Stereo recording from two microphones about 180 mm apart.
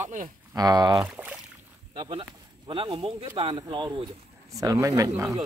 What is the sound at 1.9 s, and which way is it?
Speech, 30° right (ahead or behind).